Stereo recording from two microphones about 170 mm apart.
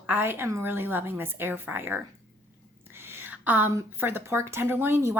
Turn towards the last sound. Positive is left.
turn(degrees=-15)  # may be behind; listen again after turning